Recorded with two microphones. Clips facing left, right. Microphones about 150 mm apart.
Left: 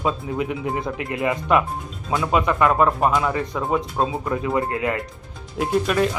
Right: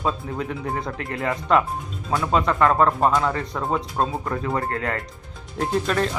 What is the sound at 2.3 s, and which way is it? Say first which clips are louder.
Speech: even; 10° left (ahead or behind).